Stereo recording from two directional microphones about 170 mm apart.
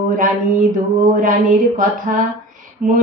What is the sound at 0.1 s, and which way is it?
Speech, 50° right (ahead or behind).